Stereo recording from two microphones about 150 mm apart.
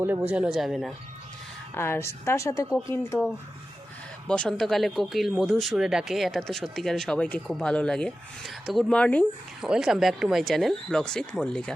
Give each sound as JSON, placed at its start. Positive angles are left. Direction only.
{"t": 0.0, "sound": "speech", "side_deg": -10}
{"t": 1.7, "sound": "a woman's voice", "side_deg": 15}
{"t": 4.3, "sound": "speech", "side_deg": 5}
{"t": 9.6, "sound": "speech", "side_deg": -5}